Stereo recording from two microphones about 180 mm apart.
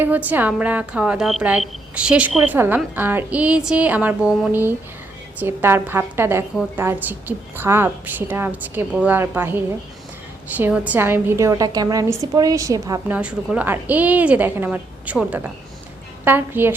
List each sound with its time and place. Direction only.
0.0 s a woman's voice: 10° right (ahead or behind)
13.1 s a woman's voice: 5° right (ahead or behind)